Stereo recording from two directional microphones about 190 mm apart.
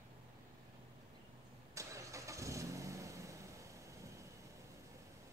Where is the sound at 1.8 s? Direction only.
15° right (ahead or behind).